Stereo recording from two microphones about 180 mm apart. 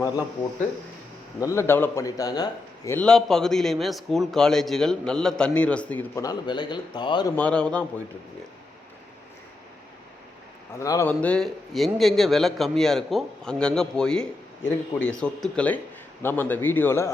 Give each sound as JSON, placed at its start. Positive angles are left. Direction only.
{"t": 1.4, "sound": "a man's voice", "side_deg": 15}
{"t": 3.0, "sound": "a man's voice", "side_deg": 5}
{"t": 7.3, "sound": "a man's voice", "side_deg": 5}
{"t": 10.8, "sound": "a man's voice", "side_deg": 15}